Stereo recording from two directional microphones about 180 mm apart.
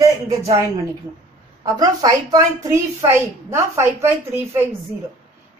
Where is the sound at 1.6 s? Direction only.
20° right (ahead or behind).